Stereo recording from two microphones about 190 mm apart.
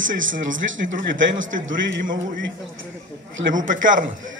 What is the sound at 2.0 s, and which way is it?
Speech, 45° right (ahead or behind).